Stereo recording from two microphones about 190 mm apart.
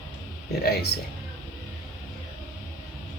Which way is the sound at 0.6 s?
55° left (ahead or behind).